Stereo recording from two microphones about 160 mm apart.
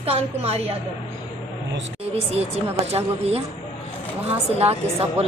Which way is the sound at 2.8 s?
40° right (ahead or behind).